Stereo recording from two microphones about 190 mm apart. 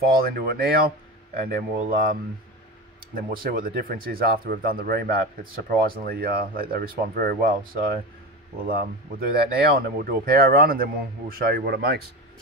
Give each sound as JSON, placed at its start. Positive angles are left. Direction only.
{"t": 0.2, "sound": "speech", "side_deg": -55}
{"t": 3.2, "sound": "speech", "side_deg": -50}